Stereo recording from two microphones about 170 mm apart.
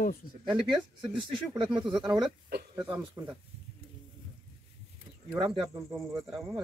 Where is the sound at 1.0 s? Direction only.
30° right (ahead or behind).